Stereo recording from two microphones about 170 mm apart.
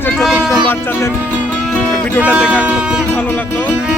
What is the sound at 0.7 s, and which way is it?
Music, 15° left (ahead or behind).